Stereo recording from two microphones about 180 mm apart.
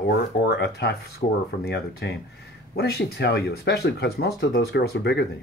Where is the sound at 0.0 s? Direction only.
60° left (ahead or behind).